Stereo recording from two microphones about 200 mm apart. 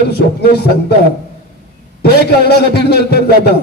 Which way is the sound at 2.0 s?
55° left (ahead or behind).